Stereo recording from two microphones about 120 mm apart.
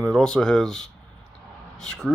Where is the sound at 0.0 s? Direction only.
5° left (ahead or behind).